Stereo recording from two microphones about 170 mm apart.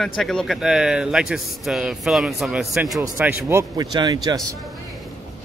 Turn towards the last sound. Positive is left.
turn(degrees=-25)  # may be behind; listen again after turning